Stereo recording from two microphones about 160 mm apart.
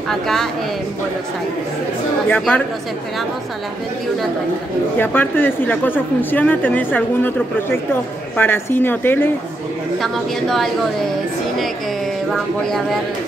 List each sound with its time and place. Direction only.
0.1 s a woman's voice: centre (ahead or behind)
2.2 s a woman's voice: 10° left (ahead or behind)
4.9 s a woman's voice: 10° left (ahead or behind)
9.9 s a woman's voice: centre (ahead or behind)